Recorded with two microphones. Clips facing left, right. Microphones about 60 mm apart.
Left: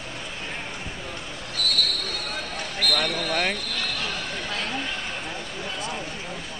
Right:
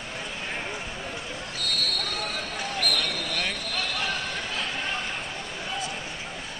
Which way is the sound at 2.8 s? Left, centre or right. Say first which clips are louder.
Left 5 dB; left.